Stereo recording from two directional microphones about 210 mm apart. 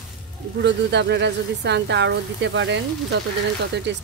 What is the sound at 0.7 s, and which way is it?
Speech, 55° right (ahead or behind).